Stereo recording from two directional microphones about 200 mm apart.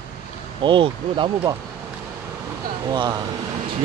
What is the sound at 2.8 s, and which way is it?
Speech, 20° right (ahead or behind).